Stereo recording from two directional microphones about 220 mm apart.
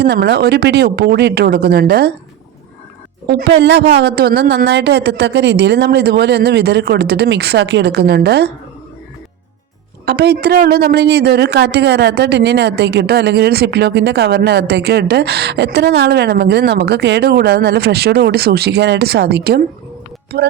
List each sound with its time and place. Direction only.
0.0 s a woman's voice: 50° right (ahead or behind)
3.2 s a woman's voice: 50° right (ahead or behind)
10.1 s a woman's voice: 45° right (ahead or behind)